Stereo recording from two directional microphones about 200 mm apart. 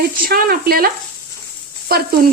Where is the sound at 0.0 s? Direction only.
50° right (ahead or behind).